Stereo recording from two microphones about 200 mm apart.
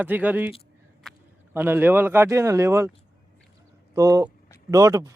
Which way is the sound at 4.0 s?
15° right (ahead or behind).